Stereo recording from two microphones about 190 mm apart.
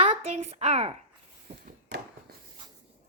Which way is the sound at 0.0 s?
35° right (ahead or behind).